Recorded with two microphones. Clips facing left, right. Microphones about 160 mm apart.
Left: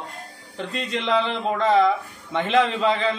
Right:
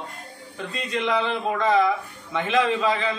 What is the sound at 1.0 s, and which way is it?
A man's voice, 20° left (ahead or behind).